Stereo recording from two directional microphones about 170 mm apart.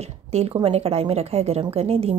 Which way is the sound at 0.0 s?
40° right (ahead or behind).